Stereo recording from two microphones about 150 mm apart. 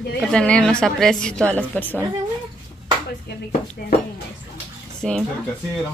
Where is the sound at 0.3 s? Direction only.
5° left (ahead or behind).